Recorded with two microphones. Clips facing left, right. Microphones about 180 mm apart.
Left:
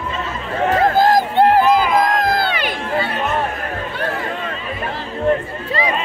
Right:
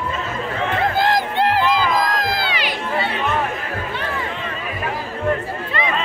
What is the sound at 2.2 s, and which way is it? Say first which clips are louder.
Crowd: left 5 dB; 55° left (ahead or behind).